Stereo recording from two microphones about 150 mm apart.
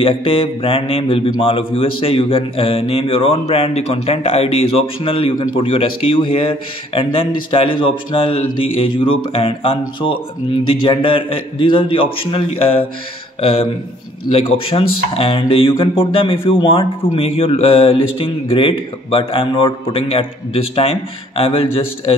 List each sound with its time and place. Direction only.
0.0 s a man's voice: 35° left (ahead or behind)